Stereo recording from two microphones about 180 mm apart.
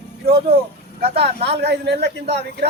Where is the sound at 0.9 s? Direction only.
65° right (ahead or behind).